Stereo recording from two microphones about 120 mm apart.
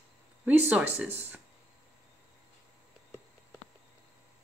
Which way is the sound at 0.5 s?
10° right (ahead or behind).